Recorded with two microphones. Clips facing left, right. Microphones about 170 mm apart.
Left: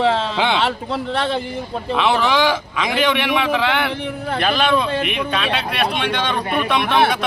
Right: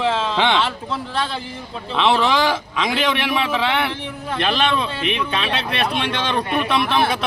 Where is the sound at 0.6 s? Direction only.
60° left (ahead or behind).